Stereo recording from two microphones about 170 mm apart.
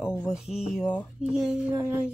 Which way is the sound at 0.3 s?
5° right (ahead or behind).